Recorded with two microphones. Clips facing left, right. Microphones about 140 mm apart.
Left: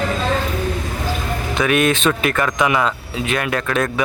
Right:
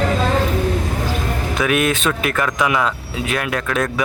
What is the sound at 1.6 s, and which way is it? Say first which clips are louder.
Speech: left 2 dB; 5° right (ahead or behind).